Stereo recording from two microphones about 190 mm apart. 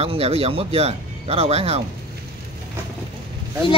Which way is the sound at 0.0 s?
30° right (ahead or behind).